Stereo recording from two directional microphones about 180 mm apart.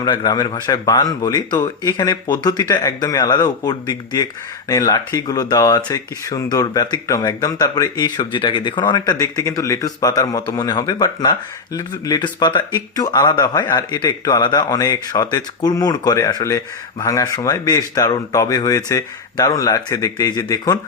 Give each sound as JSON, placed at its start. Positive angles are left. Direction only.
{"t": 0.0, "sound": "speech", "side_deg": 25}